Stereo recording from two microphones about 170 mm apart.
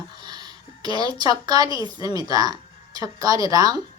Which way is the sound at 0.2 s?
25° right (ahead or behind).